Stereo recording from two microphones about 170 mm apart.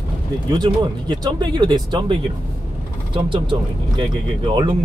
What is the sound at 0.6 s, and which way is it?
Speech, 25° right (ahead or behind).